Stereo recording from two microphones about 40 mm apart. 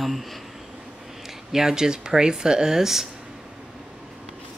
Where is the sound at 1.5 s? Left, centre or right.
Centre.